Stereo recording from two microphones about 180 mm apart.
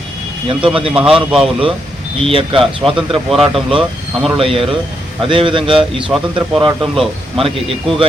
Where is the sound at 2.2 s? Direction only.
30° right (ahead or behind).